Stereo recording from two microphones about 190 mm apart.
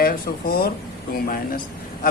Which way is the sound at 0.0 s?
50° left (ahead or behind).